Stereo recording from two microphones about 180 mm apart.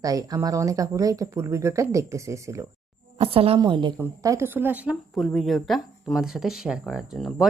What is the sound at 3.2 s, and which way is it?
Speech, 30° right (ahead or behind).